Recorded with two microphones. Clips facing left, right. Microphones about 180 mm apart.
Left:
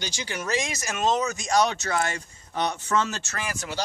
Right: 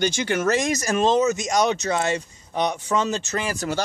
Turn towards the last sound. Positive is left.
turn(degrees=-40)  # may be behind; listen again after turning